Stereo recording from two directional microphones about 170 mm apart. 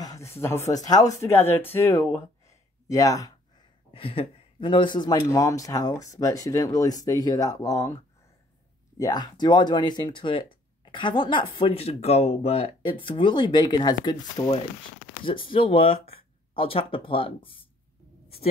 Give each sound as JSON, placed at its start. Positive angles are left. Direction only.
{"t": 0.0, "sound": "a sound", "side_deg": 20}
{"t": 0.4, "sound": "speech", "side_deg": 15}
{"t": 3.9, "sound": "speech", "side_deg": 35}
{"t": 8.9, "sound": "speech", "side_deg": 20}